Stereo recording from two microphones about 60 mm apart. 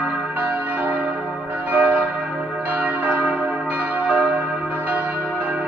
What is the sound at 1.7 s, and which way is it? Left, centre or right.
Church bell, right.